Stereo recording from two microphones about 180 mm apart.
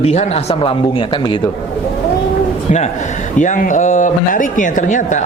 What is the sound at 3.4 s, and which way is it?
Speech, 45° left (ahead or behind).